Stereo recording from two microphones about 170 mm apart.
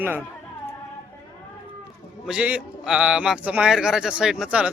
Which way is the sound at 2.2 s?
5° right (ahead or behind).